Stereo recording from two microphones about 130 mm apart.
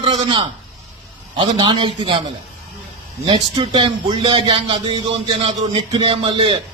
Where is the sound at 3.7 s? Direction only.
40° right (ahead or behind).